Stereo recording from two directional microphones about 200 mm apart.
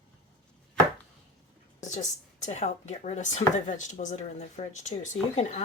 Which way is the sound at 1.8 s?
35° left (ahead or behind).